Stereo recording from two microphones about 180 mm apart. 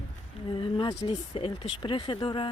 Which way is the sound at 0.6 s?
25° left (ahead or behind).